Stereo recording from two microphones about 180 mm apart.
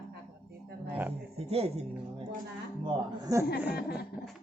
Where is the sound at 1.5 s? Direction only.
35° right (ahead or behind).